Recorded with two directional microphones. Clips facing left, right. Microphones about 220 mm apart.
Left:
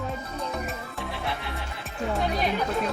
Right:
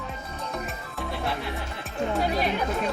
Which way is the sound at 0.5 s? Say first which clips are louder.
Left 1 dB; centre (ahead or behind).